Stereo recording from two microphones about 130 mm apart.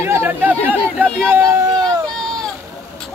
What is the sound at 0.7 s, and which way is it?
Speech, 5° left (ahead or behind).